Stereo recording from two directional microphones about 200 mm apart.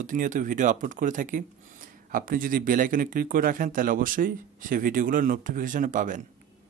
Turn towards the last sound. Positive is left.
turn(degrees=-40)  # may be behind; listen again after turning